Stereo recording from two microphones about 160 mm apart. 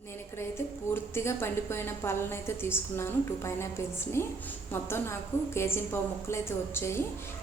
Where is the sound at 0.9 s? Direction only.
15° left (ahead or behind).